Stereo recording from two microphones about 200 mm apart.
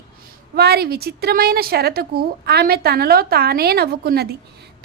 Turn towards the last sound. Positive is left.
turn(degrees=-50)  # may be behind; listen again after turning